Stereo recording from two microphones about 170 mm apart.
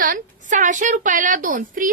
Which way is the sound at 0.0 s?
50° right (ahead or behind).